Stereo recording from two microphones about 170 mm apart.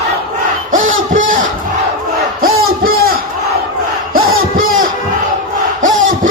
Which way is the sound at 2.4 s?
60° right (ahead or behind).